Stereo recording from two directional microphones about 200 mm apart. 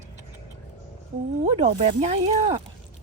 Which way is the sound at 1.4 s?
35° right (ahead or behind).